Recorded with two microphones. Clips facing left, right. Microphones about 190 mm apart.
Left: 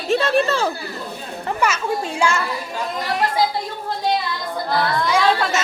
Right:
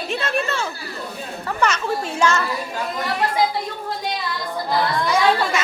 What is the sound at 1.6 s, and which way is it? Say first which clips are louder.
Speech: even; 10° left (ahead or behind).